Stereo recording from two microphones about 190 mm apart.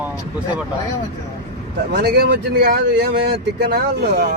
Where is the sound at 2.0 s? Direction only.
55° right (ahead or behind).